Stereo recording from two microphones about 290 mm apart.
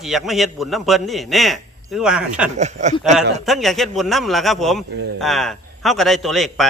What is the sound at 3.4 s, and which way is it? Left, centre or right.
A man's voice, centre.